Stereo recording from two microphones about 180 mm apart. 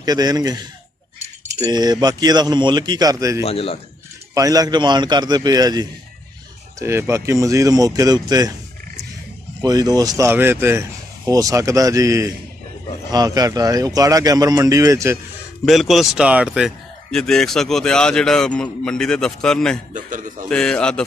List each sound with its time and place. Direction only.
0.0 s a man's voice: 20° right (ahead or behind)
3.4 s a man's voice: 30° left (ahead or behind)
4.3 s a man's voice: 20° right (ahead or behind)
9.6 s a man's voice: 20° right (ahead or behind)
15.6 s speech: centre (ahead or behind)
19.9 s a man's voice: 45° right (ahead or behind)
20.4 s speech: 5° left (ahead or behind)